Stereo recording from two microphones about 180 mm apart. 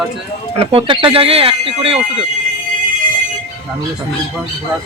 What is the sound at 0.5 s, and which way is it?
Speech, 30° right (ahead or behind).